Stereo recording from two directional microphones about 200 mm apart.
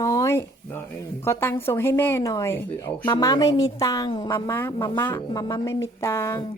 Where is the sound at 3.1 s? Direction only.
20° left (ahead or behind).